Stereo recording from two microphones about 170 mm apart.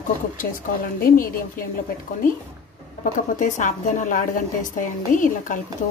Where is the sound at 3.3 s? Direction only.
45° left (ahead or behind).